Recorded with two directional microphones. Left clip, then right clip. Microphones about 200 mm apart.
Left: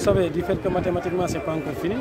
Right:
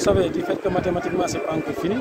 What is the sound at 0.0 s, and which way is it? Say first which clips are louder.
Speech: right 1 dB; 5° left (ahead or behind).